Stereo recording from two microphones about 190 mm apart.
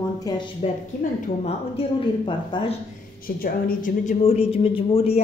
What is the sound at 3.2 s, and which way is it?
A woman's voice, 45° left (ahead or behind).